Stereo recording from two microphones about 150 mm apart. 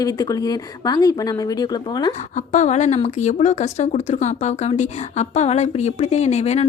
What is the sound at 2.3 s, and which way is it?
Speech, 50° left (ahead or behind).